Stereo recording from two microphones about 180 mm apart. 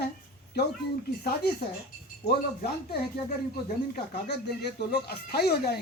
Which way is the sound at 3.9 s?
65° left (ahead or behind).